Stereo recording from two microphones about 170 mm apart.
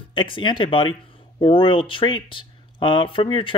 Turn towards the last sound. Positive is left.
turn(degrees=30)  # may be behind; listen again after turning